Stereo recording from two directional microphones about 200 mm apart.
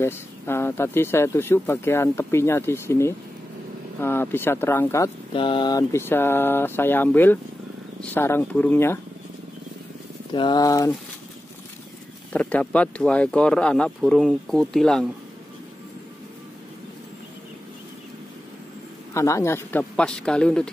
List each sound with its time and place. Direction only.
0.0 s speech: 10° left (ahead or behind)
5.3 s speech: 25° left (ahead or behind)
10.3 s speech: 20° left (ahead or behind)
12.3 s speech: 10° left (ahead or behind)
19.1 s speech: 15° left (ahead or behind)